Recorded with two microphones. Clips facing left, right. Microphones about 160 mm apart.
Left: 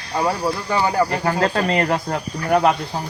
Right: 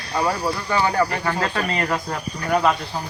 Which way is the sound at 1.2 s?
35° left (ahead or behind).